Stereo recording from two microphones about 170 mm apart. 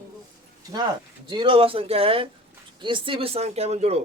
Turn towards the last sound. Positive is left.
turn(degrees=-40)  # may be behind; listen again after turning